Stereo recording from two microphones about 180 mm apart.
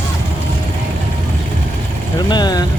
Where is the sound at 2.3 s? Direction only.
25° left (ahead or behind).